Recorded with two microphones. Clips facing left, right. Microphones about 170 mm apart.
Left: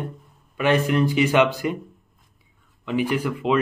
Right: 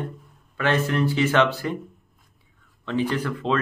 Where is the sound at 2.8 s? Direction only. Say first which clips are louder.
Left 2 dB; 10° left (ahead or behind).